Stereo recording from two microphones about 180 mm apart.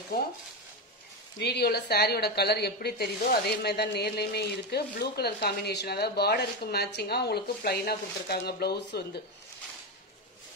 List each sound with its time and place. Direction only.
0.1 s a woman's voice: 55° left (ahead or behind)
1.4 s a woman's voice: 65° left (ahead or behind)